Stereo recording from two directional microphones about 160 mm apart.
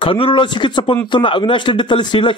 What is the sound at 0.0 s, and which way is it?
A man's voice, 30° left (ahead or behind).